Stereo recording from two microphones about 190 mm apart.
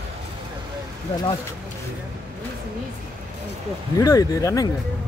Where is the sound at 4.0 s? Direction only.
15° left (ahead or behind).